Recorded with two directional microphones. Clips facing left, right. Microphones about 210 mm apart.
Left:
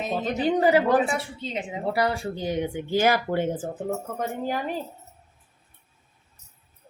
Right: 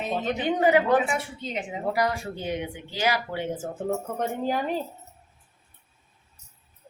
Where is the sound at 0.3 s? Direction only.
35° left (ahead or behind).